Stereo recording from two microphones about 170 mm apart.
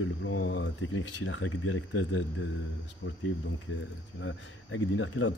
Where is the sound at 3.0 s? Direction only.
90° left.